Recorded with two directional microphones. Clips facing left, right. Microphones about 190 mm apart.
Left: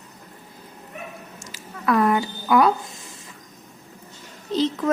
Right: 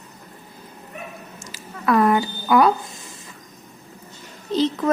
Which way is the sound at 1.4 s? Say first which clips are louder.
Right 1 dB; 35° right (ahead or behind).